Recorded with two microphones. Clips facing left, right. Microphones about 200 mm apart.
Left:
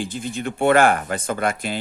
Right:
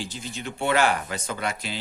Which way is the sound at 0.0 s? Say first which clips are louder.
Left 7 dB; 55° left (ahead or behind).